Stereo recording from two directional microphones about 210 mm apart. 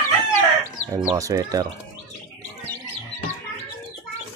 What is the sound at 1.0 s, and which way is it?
Speech, 15° right (ahead or behind).